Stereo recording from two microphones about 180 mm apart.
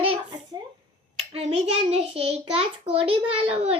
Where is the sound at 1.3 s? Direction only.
35° right (ahead or behind).